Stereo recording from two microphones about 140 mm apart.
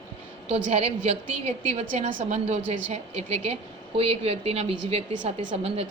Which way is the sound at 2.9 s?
50° right (ahead or behind).